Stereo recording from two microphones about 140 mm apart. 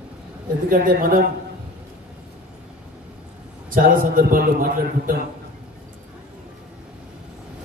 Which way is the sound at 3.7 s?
90° right.